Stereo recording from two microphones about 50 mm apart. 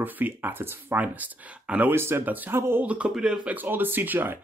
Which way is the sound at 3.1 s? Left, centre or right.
Centre.